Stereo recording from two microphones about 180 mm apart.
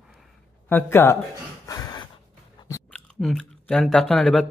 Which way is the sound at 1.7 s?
20° left (ahead or behind).